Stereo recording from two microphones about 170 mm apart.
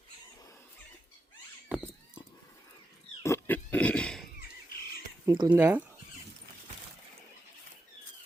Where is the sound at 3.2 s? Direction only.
15° left (ahead or behind).